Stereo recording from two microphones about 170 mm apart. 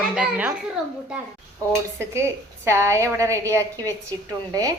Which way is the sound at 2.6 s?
15° right (ahead or behind).